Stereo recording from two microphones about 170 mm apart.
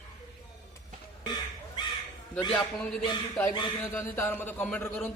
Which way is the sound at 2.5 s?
5° left (ahead or behind).